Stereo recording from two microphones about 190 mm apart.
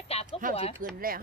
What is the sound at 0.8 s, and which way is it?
Speech, 50° right (ahead or behind).